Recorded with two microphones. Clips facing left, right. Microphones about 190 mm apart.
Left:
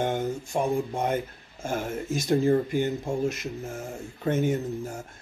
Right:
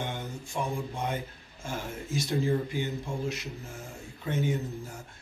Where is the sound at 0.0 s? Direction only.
45° left (ahead or behind).